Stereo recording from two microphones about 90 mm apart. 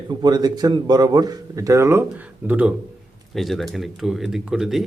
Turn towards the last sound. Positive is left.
turn(degrees=-5)  # may be behind; listen again after turning